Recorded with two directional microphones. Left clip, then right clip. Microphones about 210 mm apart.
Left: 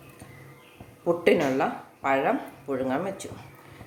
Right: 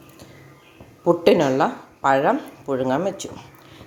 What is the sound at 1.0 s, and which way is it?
Speech, 30° right (ahead or behind).